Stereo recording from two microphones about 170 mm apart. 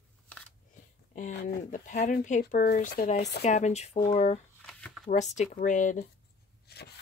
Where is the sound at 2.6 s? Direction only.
70° left (ahead or behind).